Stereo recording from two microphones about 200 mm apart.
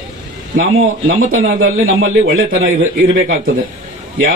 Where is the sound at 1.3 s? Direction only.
80° right.